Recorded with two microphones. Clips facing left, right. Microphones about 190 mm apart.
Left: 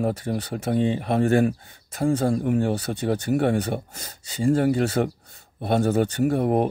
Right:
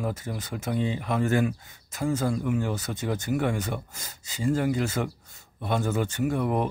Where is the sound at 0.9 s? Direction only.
35° left (ahead or behind).